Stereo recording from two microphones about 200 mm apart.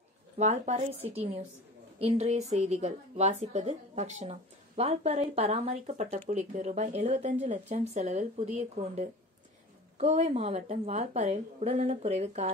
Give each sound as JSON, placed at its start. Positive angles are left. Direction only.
{"t": 0.4, "sound": "a woman's voice", "side_deg": -35}